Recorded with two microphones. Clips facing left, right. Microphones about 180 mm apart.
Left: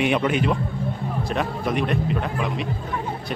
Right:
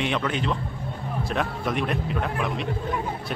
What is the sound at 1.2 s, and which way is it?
A man's voice, centre (ahead or behind).